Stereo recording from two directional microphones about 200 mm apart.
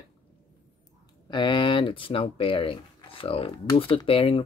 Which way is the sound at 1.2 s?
25° left (ahead or behind).